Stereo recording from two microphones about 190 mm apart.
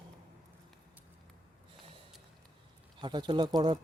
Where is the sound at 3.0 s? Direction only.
25° right (ahead or behind).